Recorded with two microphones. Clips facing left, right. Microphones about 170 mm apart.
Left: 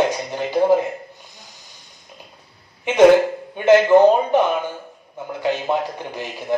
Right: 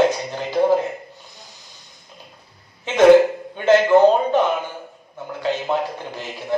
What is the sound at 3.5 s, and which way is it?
A man's voice, 15° left (ahead or behind).